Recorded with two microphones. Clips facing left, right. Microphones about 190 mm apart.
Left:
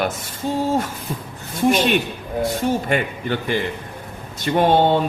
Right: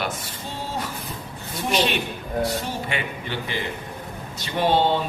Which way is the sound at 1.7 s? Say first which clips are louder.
Left 4 dB; 50° left (ahead or behind).